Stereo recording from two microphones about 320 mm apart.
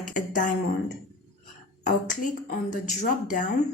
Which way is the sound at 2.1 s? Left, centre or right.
Left.